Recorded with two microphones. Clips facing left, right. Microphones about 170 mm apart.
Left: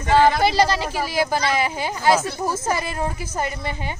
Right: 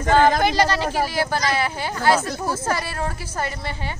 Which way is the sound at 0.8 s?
45° right (ahead or behind).